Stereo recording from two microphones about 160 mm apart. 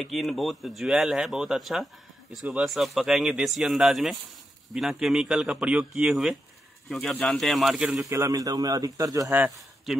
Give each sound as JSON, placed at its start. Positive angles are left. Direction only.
{"t": 0.0, "sound": "speech", "side_deg": 0}
{"t": 8.1, "sound": "a man's voice", "side_deg": -20}
{"t": 9.3, "sound": "a man's voice", "side_deg": -10}